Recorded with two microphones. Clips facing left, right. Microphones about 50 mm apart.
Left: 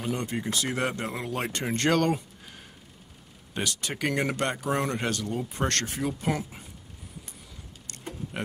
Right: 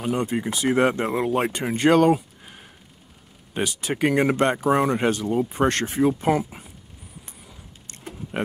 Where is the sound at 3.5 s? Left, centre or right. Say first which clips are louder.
Right 6 dB; centre.